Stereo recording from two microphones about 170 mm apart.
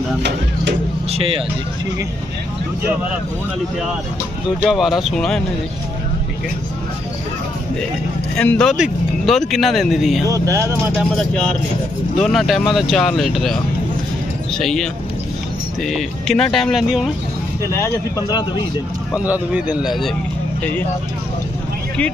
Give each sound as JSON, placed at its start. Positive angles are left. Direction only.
{"t": 1.1, "sound": "speech", "side_deg": -35}
{"t": 4.6, "sound": "speech", "side_deg": 0}
{"t": 8.4, "sound": "speech", "side_deg": 5}
{"t": 10.2, "sound": "speech", "side_deg": -20}
{"t": 11.0, "sound": "speech", "side_deg": 5}
{"t": 14.6, "sound": "speech", "side_deg": 0}
{"t": 17.7, "sound": "speech", "side_deg": 15}
{"t": 19.1, "sound": "a man's voice", "side_deg": -10}